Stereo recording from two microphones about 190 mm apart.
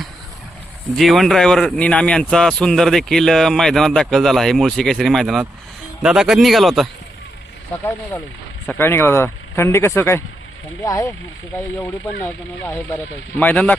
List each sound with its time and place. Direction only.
0.9 s speech: centre (ahead or behind)
8.6 s speech: 10° left (ahead or behind)